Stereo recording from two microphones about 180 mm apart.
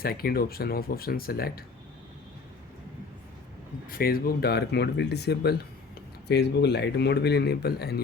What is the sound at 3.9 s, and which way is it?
Speech, 55° left (ahead or behind).